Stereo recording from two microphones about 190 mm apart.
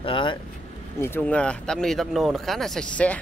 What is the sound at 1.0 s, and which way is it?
Speech, 10° left (ahead or behind).